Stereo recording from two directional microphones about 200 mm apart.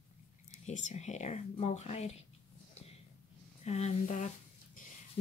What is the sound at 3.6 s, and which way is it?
Speech, 35° left (ahead or behind).